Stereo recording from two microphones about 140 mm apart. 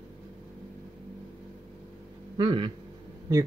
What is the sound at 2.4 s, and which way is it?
Speech, 35° right (ahead or behind).